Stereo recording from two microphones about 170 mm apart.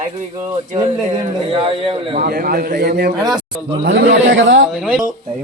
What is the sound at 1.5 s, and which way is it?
Speech, 30° right (ahead or behind).